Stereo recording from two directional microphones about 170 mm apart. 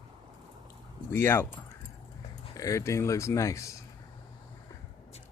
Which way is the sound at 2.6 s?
20° left (ahead or behind).